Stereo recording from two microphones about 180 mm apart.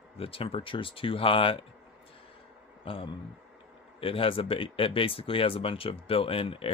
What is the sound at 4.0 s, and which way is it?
Speech, 30° left (ahead or behind).